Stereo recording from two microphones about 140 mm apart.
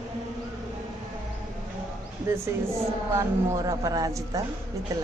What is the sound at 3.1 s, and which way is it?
A woman's voice, 25° right (ahead or behind).